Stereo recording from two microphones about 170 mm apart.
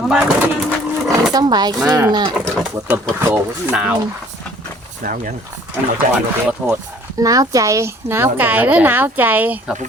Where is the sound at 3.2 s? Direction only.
10° right (ahead or behind).